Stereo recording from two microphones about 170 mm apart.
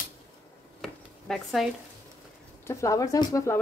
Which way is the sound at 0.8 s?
Centre (ahead or behind).